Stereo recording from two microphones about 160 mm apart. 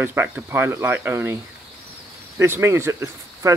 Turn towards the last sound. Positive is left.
turn(degrees=-20)  # may be behind; listen again after turning